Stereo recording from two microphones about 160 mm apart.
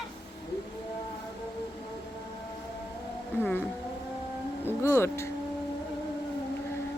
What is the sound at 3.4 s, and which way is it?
Speech, 10° left (ahead or behind).